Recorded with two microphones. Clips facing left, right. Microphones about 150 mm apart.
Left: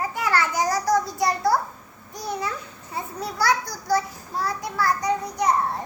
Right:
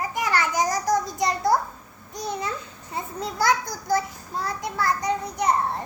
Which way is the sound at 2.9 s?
20° right (ahead or behind).